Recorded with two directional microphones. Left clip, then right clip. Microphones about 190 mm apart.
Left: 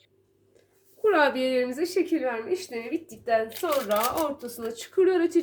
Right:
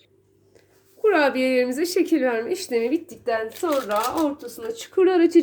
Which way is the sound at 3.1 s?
35° right (ahead or behind).